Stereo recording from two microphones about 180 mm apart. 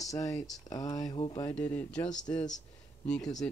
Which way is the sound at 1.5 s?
10° left (ahead or behind).